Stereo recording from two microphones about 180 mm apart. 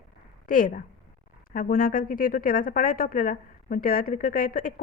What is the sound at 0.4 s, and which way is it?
A woman's voice, 50° left (ahead or behind).